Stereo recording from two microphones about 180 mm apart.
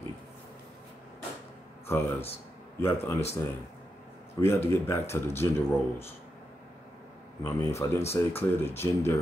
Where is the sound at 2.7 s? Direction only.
10° left (ahead or behind).